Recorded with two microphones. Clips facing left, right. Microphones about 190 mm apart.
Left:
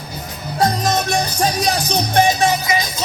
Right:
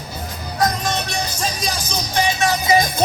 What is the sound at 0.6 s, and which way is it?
Music, 35° left (ahead or behind).